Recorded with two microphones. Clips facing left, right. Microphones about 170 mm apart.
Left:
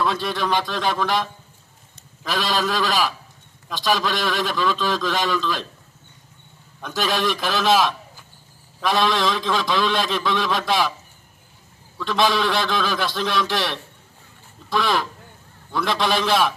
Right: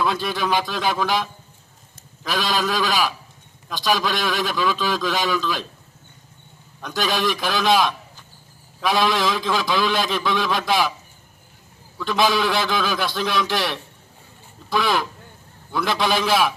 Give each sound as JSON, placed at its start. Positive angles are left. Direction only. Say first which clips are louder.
{"t": 0.0, "sound": "a man's voice", "louder": "even", "side_deg": 0}
{"t": 6.8, "sound": "a man's voice", "louder": "even", "side_deg": 0}
{"t": 11.9, "sound": "a man's voice", "louder": "even", "side_deg": 0}